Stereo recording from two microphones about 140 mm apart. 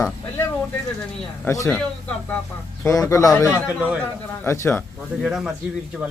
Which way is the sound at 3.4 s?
10° right (ahead or behind).